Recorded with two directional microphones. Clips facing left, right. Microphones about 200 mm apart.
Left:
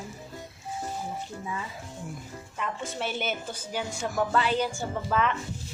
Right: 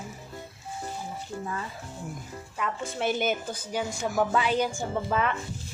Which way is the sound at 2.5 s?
5° right (ahead or behind).